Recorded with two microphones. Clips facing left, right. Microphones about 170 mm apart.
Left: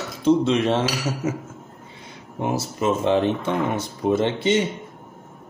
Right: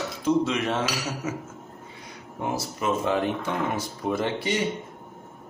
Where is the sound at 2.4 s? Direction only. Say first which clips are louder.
Left 5 dB; 25° left (ahead or behind).